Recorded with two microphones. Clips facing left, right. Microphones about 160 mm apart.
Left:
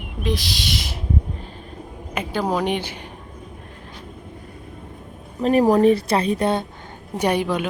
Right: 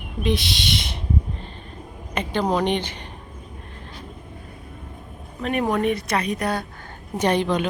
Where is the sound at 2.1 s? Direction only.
5° left (ahead or behind).